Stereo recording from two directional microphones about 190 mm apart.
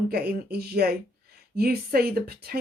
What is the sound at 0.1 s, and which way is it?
Speech, 55° right (ahead or behind).